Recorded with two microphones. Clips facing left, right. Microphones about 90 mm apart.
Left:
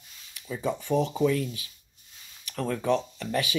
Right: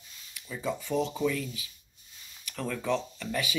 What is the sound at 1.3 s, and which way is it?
Speech, 45° left (ahead or behind).